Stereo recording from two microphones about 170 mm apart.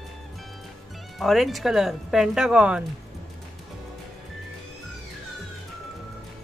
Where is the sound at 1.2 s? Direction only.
Centre (ahead or behind).